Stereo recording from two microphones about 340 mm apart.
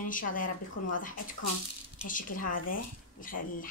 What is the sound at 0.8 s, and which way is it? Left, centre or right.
Speech, left.